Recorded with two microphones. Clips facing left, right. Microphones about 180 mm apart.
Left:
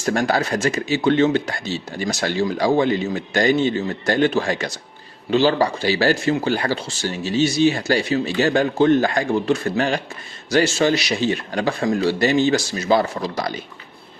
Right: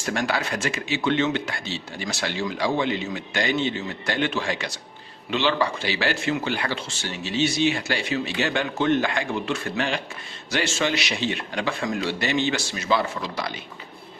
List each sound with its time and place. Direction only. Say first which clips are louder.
0.0 s speech: left 6 dB; 40° left (ahead or behind)